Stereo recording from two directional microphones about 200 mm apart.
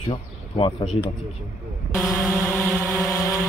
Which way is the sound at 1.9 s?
Centre (ahead or behind).